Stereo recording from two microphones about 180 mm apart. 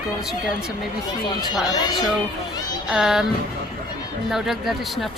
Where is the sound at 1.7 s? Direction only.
20° left (ahead or behind).